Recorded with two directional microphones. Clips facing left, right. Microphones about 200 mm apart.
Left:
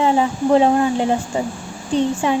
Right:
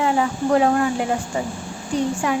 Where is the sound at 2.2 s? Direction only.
25° left (ahead or behind).